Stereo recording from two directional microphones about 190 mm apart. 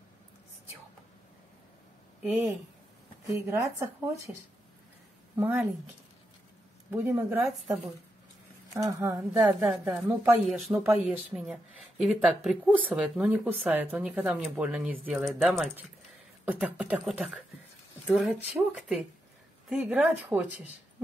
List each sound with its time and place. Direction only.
2.2 s speech: 10° right (ahead or behind)
6.9 s speech: 10° right (ahead or behind)
8.7 s speech: 15° right (ahead or behind)
9.7 s a woman's voice: centre (ahead or behind)